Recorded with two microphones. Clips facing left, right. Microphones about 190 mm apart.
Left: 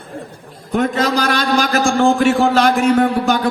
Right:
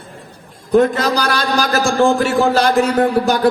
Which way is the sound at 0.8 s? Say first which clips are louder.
Right 2 dB; 35° right (ahead or behind).